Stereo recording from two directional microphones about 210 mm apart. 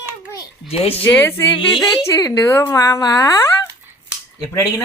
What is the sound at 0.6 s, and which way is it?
Speech, 30° left (ahead or behind).